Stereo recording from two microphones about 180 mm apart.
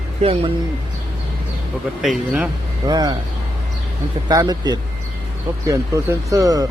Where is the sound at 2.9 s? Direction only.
20° right (ahead or behind).